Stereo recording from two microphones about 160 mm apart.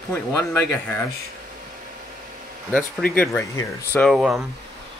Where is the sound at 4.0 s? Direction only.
Centre (ahead or behind).